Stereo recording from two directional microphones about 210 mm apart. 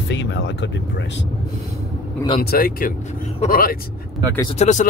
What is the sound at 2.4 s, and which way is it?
Speech, 45° left (ahead or behind).